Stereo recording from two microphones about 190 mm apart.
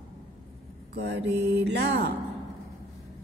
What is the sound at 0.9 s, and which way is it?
Speech, 65° right (ahead or behind).